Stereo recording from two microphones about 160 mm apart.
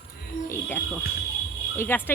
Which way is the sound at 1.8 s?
10° left (ahead or behind).